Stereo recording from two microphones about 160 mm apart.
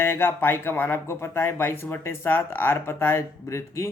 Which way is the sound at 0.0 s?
15° left (ahead or behind).